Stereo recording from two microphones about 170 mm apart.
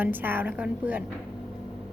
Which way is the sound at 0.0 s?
10° right (ahead or behind).